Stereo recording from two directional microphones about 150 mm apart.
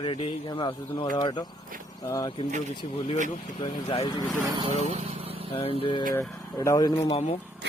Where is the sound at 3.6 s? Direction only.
40° left (ahead or behind).